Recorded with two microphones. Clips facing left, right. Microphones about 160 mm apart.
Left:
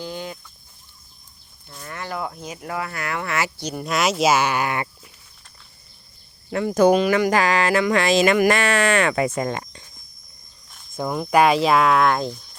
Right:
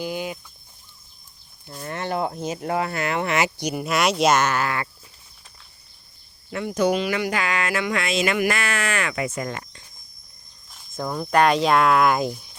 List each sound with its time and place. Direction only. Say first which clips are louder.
0.0 s a sound: right 3 dB; 10° right (ahead or behind)
1.7 s speech: right 4 dB; 25° right (ahead or behind); by 4.9 s 20° left (ahead or behind)
6.5 s speech: left 5 dB; 40° left (ahead or behind)
10.9 s speech: left 2 dB; 10° left (ahead or behind); by 12.5 s 10° right (ahead or behind)